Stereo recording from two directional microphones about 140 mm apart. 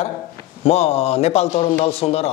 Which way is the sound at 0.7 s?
45° left (ahead or behind).